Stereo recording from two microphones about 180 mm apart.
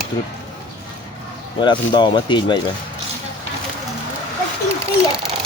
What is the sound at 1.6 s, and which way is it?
Speech, 25° left (ahead or behind).